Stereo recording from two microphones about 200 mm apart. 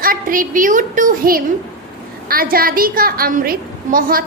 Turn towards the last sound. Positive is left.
turn(degrees=-45)  # may be behind; listen again after turning